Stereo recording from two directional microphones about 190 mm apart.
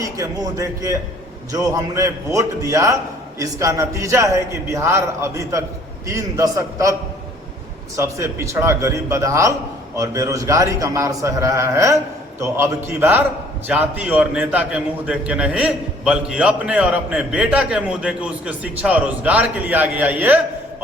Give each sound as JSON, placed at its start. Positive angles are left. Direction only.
{"t": 0.0, "sound": "a man's voice", "side_deg": -15}
{"t": 7.9, "sound": "a man's voice", "side_deg": -15}